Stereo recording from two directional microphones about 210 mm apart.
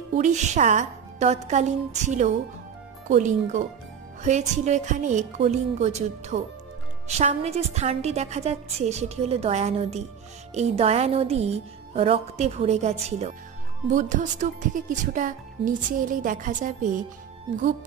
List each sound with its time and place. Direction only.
0.2 s music: 35° right (ahead or behind)